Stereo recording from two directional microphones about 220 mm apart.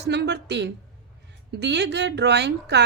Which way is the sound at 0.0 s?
50° right (ahead or behind).